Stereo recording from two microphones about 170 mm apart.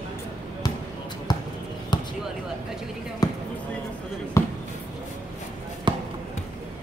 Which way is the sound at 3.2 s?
20° left (ahead or behind).